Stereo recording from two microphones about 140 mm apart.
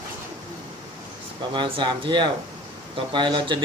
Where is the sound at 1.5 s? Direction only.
35° right (ahead or behind).